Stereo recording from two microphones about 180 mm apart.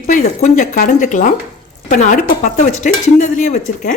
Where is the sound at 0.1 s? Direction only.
45° left (ahead or behind).